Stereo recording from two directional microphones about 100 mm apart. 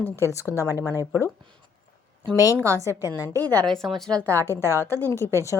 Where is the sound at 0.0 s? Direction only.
25° left (ahead or behind).